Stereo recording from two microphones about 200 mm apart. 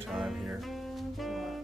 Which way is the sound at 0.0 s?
Centre (ahead or behind).